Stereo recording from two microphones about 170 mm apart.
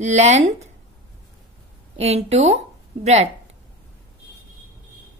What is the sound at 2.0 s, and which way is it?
Speech, 40° right (ahead or behind).